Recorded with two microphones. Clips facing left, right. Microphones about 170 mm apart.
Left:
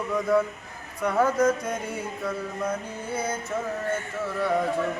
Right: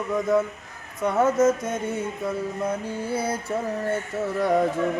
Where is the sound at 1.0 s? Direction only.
25° right (ahead or behind).